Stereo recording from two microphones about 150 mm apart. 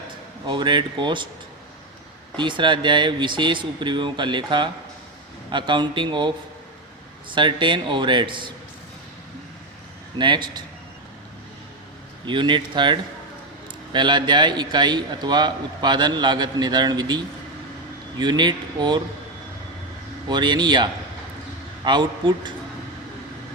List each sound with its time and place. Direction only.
0.4 s speech: 30° right (ahead or behind)
2.3 s speech: 30° right (ahead or behind)
10.2 s a man's voice: 30° right (ahead or behind)
12.2 s a man's voice: 30° right (ahead or behind)
18.2 s a man's voice: 30° right (ahead or behind)
20.2 s a man's voice: 30° right (ahead or behind)